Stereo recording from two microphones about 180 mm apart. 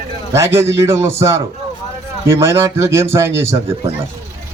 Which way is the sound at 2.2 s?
15° right (ahead or behind).